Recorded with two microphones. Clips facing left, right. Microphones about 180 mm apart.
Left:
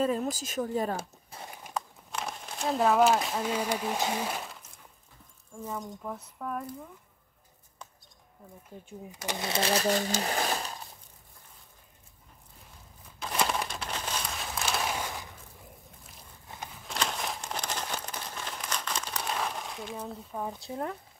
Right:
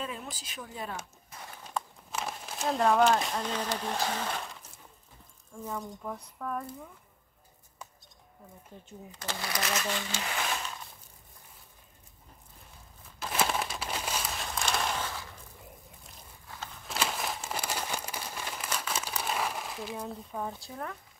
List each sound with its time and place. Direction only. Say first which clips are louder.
0.0 s a sound: left 11 dB; 40° left (ahead or behind)
1.7 s speech: even; centre (ahead or behind)
5.6 s speech: even; 5° left (ahead or behind)
8.8 s speech: left 3 dB; 15° left (ahead or behind)
9.5 s speech: left 7 dB; 30° left (ahead or behind)
13.2 s crumpling: even; 5° right (ahead or behind); by 15.3 s 15° left (ahead or behind)
16.4 s a sound: left 1 dB; 15° left (ahead or behind)
16.8 s crumpling: even; 5° right (ahead or behind)
20.6 s speech: left 5 dB; 30° left (ahead or behind)